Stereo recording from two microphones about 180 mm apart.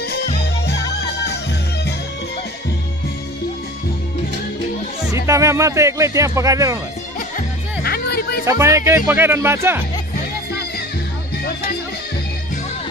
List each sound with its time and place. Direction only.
5.1 s speech: 15° right (ahead or behind)
7.2 s music: 55° left (ahead or behind)
8.5 s speech: 15° right (ahead or behind)